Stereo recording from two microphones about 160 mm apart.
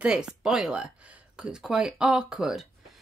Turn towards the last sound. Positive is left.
turn(degrees=-5)  # may be behind; listen again after turning